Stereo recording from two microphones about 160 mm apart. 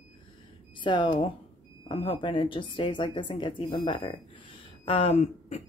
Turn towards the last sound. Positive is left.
turn(degrees=45)  # may be behind; listen again after turning